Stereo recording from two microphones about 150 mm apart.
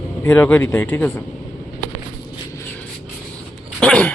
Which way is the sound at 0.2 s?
15° left (ahead or behind).